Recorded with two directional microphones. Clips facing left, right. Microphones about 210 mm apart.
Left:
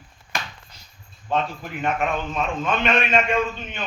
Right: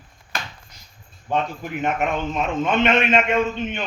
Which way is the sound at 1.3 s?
15° right (ahead or behind).